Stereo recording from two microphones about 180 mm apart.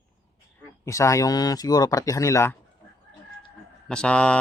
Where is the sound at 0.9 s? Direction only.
15° left (ahead or behind).